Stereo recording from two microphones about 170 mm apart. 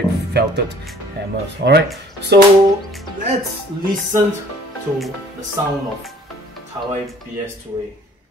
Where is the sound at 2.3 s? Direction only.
90° right.